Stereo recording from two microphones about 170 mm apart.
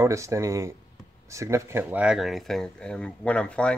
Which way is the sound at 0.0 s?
15° right (ahead or behind).